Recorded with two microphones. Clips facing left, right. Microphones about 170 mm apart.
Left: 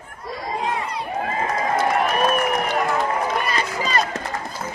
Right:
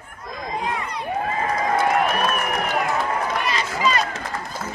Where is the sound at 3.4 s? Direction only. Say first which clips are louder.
Right 2 dB; 40° left (ahead or behind).